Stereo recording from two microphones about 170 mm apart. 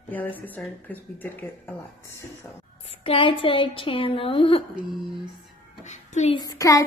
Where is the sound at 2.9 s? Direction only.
30° left (ahead or behind).